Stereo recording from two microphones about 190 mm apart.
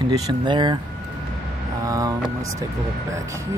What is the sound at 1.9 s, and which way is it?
Speech, 15° right (ahead or behind).